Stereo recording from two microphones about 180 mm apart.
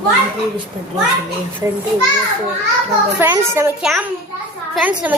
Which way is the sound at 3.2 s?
15° right (ahead or behind).